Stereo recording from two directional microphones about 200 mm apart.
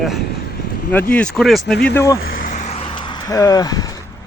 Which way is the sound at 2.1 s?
50° left (ahead or behind).